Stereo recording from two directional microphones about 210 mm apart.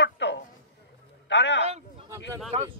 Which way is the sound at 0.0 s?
55° left (ahead or behind).